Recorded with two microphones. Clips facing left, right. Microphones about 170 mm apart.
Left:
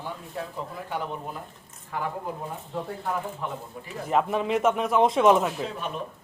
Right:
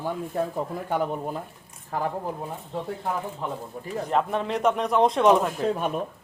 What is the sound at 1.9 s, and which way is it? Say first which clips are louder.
Speech: right 3 dB; 40° right (ahead or behind).